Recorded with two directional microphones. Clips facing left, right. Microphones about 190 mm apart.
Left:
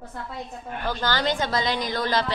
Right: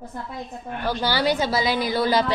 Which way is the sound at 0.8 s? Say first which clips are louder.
Right 3 dB; 10° right (ahead or behind).